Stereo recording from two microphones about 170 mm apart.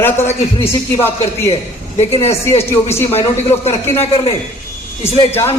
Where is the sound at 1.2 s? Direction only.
40° left (ahead or behind).